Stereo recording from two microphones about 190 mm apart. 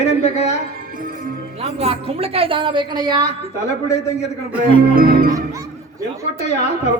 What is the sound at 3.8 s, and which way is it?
Speech, 15° left (ahead or behind).